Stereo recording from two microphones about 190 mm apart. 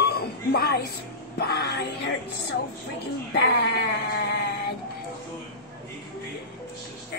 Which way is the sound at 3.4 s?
60° left (ahead or behind).